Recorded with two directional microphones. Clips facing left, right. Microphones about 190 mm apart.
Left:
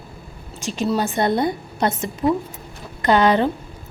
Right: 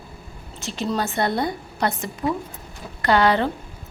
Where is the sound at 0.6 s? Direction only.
15° left (ahead or behind).